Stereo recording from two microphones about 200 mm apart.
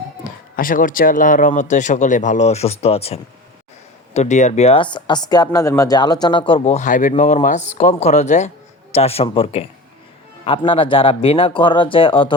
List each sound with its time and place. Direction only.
0.3 s speech: 45° left (ahead or behind); by 12.3 s 25° left (ahead or behind)